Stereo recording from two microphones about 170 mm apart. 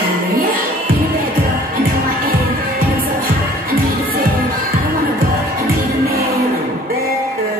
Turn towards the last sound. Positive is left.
turn(degrees=-65)  # may be behind; listen again after turning